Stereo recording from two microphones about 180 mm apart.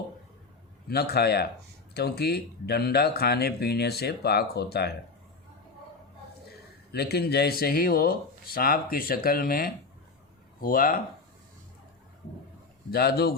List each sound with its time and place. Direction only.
0.9 s speech: 60° left (ahead or behind)
6.9 s speech: 60° left (ahead or behind)
12.9 s speech: 60° left (ahead or behind)